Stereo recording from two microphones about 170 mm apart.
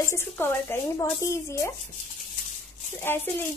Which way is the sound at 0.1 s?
15° left (ahead or behind).